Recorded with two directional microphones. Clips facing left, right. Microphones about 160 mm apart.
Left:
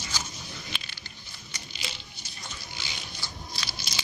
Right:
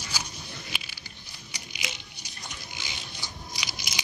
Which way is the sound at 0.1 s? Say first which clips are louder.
Right 1 dB; 10° right (ahead or behind).